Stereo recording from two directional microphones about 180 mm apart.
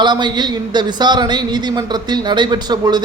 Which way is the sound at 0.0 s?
25° right (ahead or behind).